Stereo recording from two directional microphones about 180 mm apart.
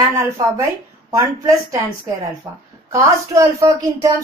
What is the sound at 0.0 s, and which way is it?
A woman's voice, 15° right (ahead or behind).